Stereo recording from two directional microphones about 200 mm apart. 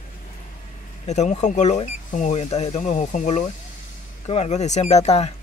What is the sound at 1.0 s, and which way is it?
Speech, 35° left (ahead or behind).